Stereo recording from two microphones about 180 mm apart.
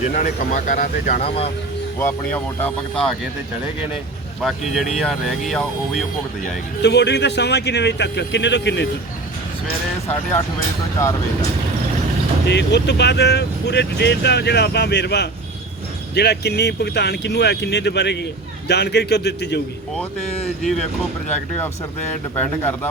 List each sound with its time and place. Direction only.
0.1 s speech: 45° left (ahead or behind)
2.0 s speech: 10° left (ahead or behind)
4.4 s speech: centre (ahead or behind)
6.8 s speech: 70° left (ahead or behind)
12.5 s speech: 70° left (ahead or behind)
20.6 s speech: centre (ahead or behind)